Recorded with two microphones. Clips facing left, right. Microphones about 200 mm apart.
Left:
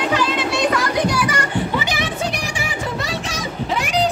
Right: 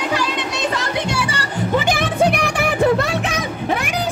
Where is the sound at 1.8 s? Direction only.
50° right (ahead or behind).